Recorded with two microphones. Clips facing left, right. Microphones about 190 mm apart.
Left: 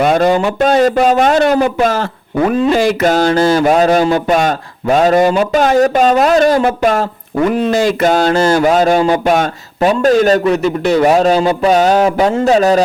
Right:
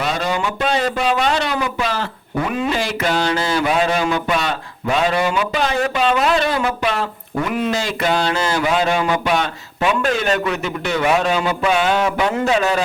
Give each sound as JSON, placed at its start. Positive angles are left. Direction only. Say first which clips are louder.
{"t": 0.0, "sound": "speech", "louder": "left 10 dB", "side_deg": 50}